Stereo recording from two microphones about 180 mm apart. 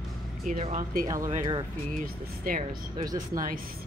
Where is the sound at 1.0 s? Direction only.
15° right (ahead or behind).